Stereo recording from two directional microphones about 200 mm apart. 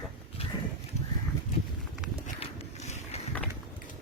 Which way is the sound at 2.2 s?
35° left (ahead or behind).